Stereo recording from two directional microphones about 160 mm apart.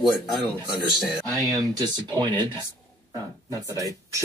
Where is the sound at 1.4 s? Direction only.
20° right (ahead or behind).